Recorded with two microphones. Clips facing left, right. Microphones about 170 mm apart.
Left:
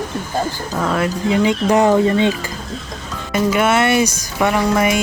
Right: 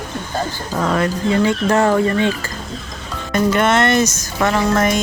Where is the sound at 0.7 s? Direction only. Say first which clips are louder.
Right 1 dB; centre (ahead or behind).